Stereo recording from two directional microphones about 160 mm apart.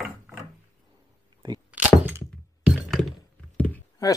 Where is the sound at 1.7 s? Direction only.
10° right (ahead or behind).